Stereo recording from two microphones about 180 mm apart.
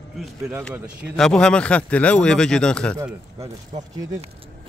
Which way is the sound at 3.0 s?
20° right (ahead or behind).